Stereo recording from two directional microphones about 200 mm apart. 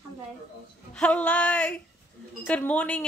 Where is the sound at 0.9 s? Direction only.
5° left (ahead or behind).